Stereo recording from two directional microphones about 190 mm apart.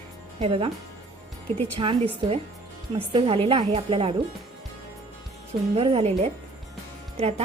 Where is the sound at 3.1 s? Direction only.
30° right (ahead or behind).